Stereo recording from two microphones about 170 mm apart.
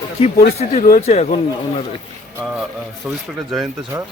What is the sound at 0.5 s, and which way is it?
A man's voice, 45° left (ahead or behind).